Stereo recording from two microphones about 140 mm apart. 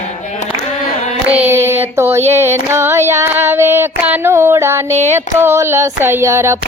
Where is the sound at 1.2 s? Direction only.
15° right (ahead or behind).